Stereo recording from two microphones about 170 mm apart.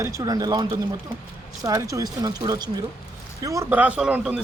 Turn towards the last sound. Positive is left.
turn(degrees=-5)  # may be behind; listen again after turning